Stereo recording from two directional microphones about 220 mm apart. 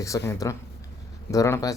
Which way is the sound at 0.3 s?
15° left (ahead or behind).